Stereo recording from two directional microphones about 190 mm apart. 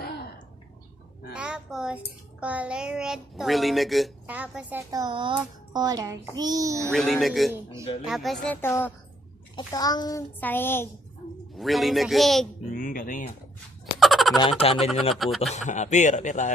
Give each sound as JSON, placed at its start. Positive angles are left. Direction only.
{"t": 1.3, "sound": "a sound", "side_deg": -5}
{"t": 2.4, "sound": "a child's voice", "side_deg": -5}
{"t": 4.9, "sound": "child singing", "side_deg": -25}
{"t": 6.9, "sound": "a child's voice", "side_deg": 0}
{"t": 8.5, "sound": "a child's voice", "side_deg": 10}
{"t": 11.5, "sound": "a child's voice", "side_deg": 0}
{"t": 12.7, "sound": "a sound", "side_deg": 45}
{"t": 13.9, "sound": "a sound", "side_deg": 0}
{"t": 14.6, "sound": "a man's voice", "side_deg": 30}
{"t": 15.1, "sound": "a child's voice", "side_deg": 0}
{"t": 15.5, "sound": "a man's voice", "side_deg": 40}